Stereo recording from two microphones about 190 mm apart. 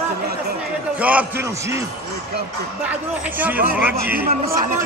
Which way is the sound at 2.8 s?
10° right (ahead or behind).